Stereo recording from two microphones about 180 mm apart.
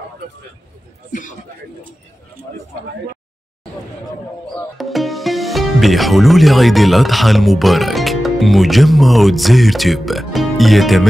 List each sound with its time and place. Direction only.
1.1 s a man's voice: 45° left (ahead or behind)
4.6 s speech: centre (ahead or behind)